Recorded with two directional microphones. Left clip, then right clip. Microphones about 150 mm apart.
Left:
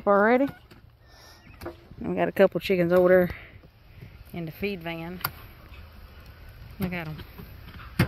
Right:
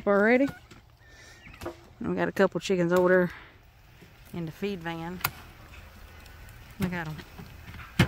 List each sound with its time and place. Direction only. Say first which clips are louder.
0.0 s speech: left 2 dB; 15° right (ahead or behind)
2.0 s speech: left 4 dB; centre (ahead or behind)
6.8 s speech: even; 5° left (ahead or behind)